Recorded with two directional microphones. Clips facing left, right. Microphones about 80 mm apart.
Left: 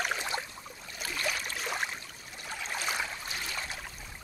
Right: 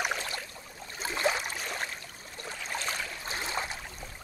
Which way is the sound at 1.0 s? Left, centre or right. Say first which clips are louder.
Right 5 dB; right.